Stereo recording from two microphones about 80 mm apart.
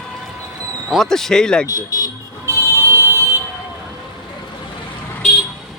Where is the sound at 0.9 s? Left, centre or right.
Centre.